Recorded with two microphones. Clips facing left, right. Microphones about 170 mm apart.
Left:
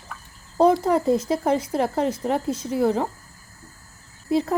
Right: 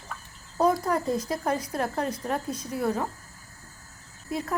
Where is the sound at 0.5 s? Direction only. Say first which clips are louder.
Left 6 dB; 25° left (ahead or behind).